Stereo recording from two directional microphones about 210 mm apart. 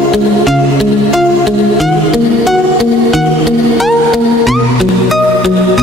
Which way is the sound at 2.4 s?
Centre (ahead or behind).